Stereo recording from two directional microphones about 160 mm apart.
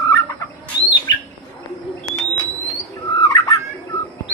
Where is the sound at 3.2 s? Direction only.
25° left (ahead or behind).